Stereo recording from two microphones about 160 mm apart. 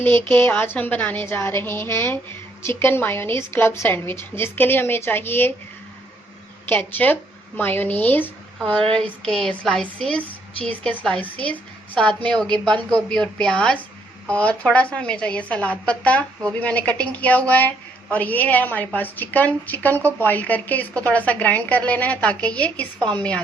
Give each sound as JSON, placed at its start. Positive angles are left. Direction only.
{"t": 0.3, "sound": "speech", "side_deg": 15}
{"t": 6.7, "sound": "a woman's voice", "side_deg": 10}
{"t": 23.0, "sound": "a woman's voice", "side_deg": -30}